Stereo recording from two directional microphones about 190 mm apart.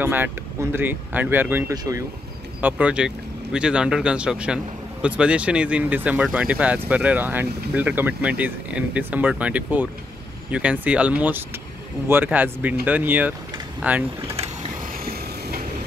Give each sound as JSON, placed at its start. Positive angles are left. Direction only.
{"t": 0.0, "sound": "speech", "side_deg": -10}
{"t": 2.6, "sound": "speech", "side_deg": -5}
{"t": 14.2, "sound": "vehicle", "side_deg": -35}
{"t": 14.8, "sound": "vehicle", "side_deg": -50}